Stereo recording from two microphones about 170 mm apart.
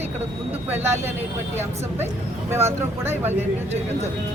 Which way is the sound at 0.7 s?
15° right (ahead or behind).